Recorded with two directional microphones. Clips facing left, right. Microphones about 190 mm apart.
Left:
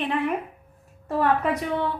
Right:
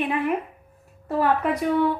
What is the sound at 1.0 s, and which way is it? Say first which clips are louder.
Speech: right 1 dB; 5° right (ahead or behind).